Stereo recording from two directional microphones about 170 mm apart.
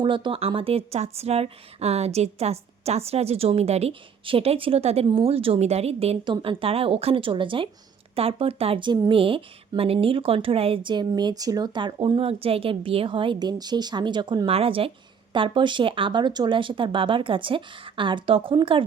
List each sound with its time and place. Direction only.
0.0 s speech: 30° right (ahead or behind)